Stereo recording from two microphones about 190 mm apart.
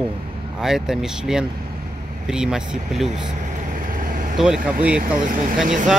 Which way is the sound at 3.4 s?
45° right (ahead or behind).